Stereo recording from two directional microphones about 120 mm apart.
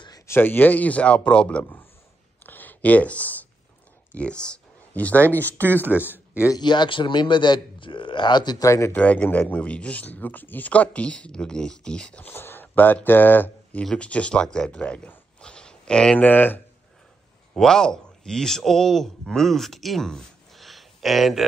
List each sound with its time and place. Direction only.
0.3 s speech: 15° left (ahead or behind)
2.4 s a sound: 15° left (ahead or behind)
4.1 s speech: 10° left (ahead or behind)
5.8 s speech: 15° right (ahead or behind)
6.1 s a sound: 20° left (ahead or behind)
6.5 s a man's voice: 40° left (ahead or behind)
8.9 s speech: 10° left (ahead or behind)
17.6 s speech: 5° left (ahead or behind)